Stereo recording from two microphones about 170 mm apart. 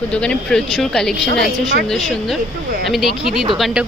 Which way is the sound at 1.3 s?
60° right (ahead or behind).